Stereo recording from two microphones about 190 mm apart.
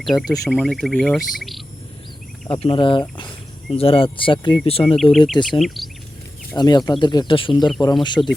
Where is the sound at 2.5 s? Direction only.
30° left (ahead or behind).